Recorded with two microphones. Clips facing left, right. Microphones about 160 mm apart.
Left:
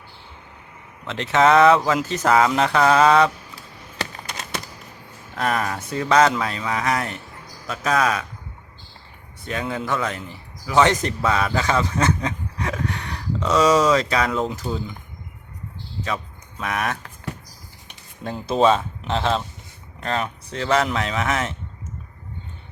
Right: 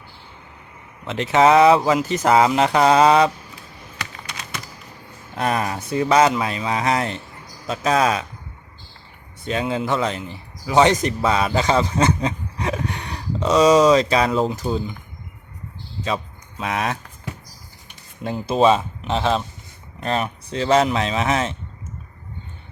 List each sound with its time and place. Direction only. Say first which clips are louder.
1.0 s speech: right 2 dB; 10° right (ahead or behind)
4.2 s a sound: left 2 dB; 45° left (ahead or behind)
5.3 s speech: right 1 dB; 20° right (ahead or behind)
9.5 s a man's voice: right 3 dB; 25° right (ahead or behind)
14.5 s speech: right 4 dB; 15° right (ahead or behind)
16.0 s speech: right 4 dB; 25° right (ahead or behind)
18.2 s speech: right 1 dB; 10° right (ahead or behind)